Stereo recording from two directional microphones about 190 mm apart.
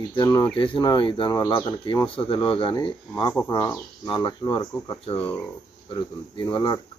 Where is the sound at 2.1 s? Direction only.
30° left (ahead or behind).